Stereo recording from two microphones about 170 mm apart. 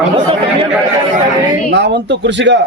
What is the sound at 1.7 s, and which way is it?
Speech, 90° right.